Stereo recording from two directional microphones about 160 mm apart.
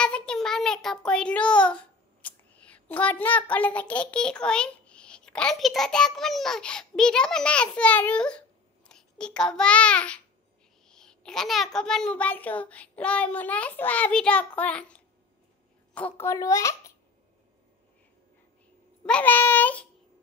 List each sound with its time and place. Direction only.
0.0 s a child's voice: 5° left (ahead or behind)
16.2 s a child's voice: 20° left (ahead or behind)
19.0 s a child's voice: 10° left (ahead or behind)